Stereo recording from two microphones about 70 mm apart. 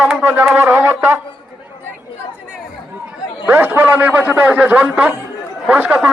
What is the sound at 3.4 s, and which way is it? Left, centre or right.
A man's voice, right.